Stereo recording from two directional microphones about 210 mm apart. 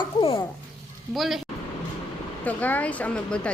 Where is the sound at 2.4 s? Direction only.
5° left (ahead or behind).